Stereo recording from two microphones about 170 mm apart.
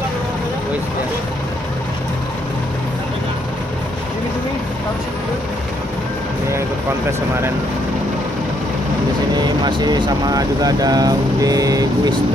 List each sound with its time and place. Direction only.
9.3 s speech: 25° right (ahead or behind)